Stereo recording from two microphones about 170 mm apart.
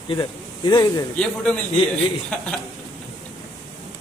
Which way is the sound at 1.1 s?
5° left (ahead or behind).